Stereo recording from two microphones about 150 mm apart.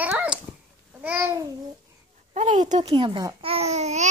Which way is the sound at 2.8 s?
35° right (ahead or behind).